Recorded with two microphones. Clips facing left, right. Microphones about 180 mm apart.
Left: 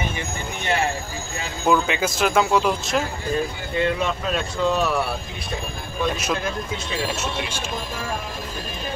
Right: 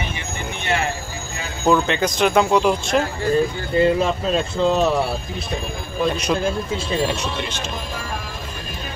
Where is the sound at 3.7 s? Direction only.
35° right (ahead or behind).